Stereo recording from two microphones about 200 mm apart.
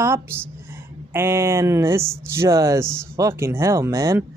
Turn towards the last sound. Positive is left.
turn(degrees=-15)  # may be behind; listen again after turning